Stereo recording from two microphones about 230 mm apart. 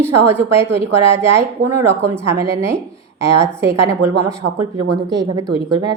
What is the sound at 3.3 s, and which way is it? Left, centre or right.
Speech, right.